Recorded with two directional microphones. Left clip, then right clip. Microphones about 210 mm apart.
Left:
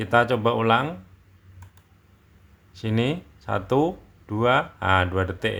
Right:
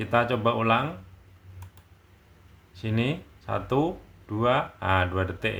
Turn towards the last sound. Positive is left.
turn(degrees=30)  # may be behind; listen again after turning